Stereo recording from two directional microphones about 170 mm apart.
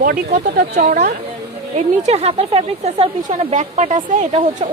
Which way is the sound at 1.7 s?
40° right (ahead or behind).